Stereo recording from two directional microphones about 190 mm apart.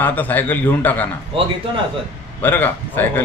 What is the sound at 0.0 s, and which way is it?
Speech, 10° left (ahead or behind).